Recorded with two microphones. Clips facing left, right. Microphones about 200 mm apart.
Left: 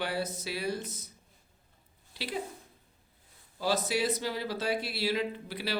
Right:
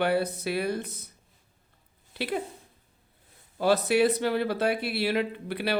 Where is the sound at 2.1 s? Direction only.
55° right (ahead or behind).